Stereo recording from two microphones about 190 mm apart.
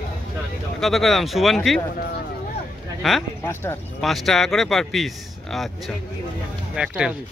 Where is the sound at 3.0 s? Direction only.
Centre (ahead or behind).